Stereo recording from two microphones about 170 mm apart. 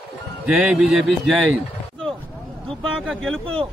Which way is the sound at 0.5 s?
5° right (ahead or behind).